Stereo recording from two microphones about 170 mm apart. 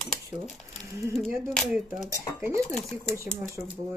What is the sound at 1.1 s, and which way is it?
Speech, centre (ahead or behind).